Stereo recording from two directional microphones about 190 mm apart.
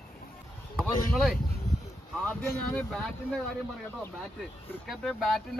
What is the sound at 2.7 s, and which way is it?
Speech, 5° left (ahead or behind).